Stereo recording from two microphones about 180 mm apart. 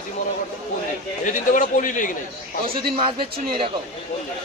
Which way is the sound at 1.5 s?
45° left (ahead or behind).